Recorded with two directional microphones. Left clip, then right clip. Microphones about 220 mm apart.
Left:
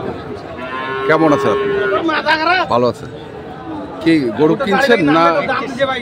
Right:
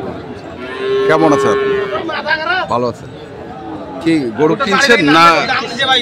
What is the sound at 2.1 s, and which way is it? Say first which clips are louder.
Chatter: left 2 dB; 50° left (ahead or behind).